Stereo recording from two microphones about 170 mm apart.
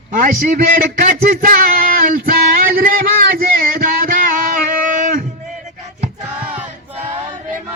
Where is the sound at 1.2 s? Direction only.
55° right (ahead or behind).